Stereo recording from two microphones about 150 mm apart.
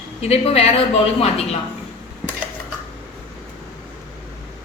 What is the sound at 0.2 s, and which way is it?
Speech, 40° left (ahead or behind).